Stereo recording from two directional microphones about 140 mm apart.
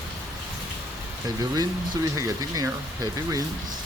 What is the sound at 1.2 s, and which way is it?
Speech, 25° right (ahead or behind).